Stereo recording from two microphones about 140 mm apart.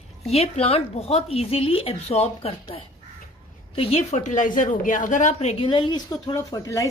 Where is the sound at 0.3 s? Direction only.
45° left (ahead or behind).